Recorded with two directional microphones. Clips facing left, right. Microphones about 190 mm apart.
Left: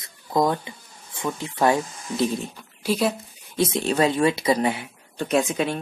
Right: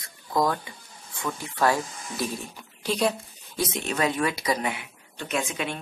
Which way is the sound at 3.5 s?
30° left (ahead or behind).